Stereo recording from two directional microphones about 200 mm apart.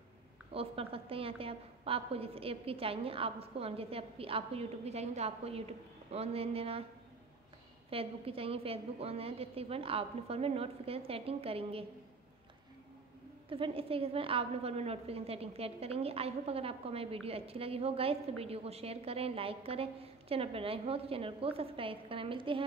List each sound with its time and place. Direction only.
0.5 s a woman's voice: 30° right (ahead or behind)
7.9 s a woman's voice: 30° right (ahead or behind)
13.5 s a woman's voice: 25° right (ahead or behind)